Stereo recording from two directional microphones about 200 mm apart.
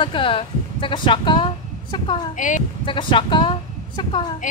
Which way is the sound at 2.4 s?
40° left (ahead or behind).